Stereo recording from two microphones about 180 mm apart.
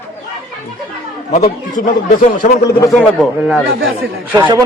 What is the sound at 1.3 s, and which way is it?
Speech, 40° left (ahead or behind).